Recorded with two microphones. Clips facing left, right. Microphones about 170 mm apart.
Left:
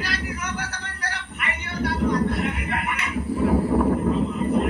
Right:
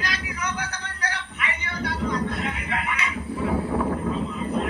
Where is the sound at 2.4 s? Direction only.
60° left (ahead or behind).